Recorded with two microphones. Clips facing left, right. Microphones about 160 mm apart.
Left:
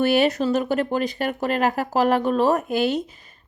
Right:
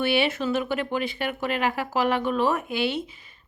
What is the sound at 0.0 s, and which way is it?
Speech, 40° left (ahead or behind).